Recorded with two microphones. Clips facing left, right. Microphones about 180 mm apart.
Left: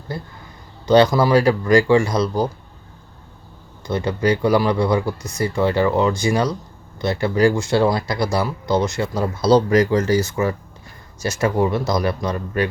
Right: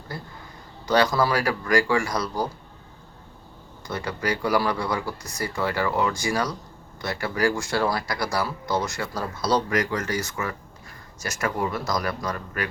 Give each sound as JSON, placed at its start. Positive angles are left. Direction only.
{"t": 0.9, "sound": "speech", "side_deg": 20}
{"t": 3.8, "sound": "speech", "side_deg": 25}